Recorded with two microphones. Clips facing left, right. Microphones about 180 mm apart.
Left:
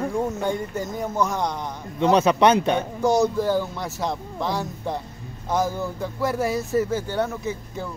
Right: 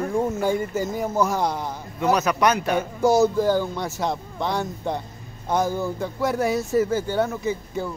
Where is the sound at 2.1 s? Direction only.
30° left (ahead or behind).